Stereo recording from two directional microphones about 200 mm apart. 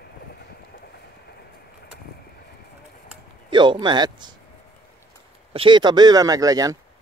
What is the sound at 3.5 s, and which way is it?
Speech, 25° right (ahead or behind).